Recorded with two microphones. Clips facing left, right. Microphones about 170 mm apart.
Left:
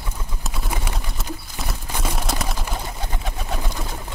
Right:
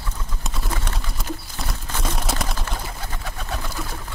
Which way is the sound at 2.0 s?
Centre (ahead or behind).